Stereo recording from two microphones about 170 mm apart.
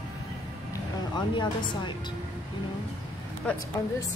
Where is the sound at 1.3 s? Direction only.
25° left (ahead or behind).